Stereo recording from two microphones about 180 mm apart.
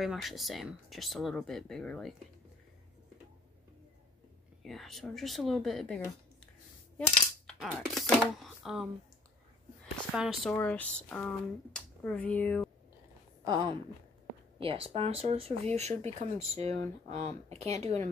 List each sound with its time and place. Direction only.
0.0 s speech: centre (ahead or behind)
4.6 s speech: centre (ahead or behind)
7.0 s coin: 5° left (ahead or behind)
10.1 s speech: 5° right (ahead or behind)
10.5 s speech: 10° left (ahead or behind)
13.4 s speech: 20° right (ahead or behind)
14.6 s speech: 30° right (ahead or behind)